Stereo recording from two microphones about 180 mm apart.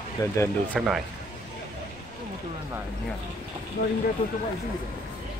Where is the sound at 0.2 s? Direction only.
20° left (ahead or behind).